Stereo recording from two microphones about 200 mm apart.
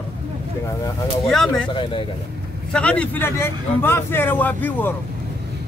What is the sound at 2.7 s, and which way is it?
A man's voice, 5° left (ahead or behind).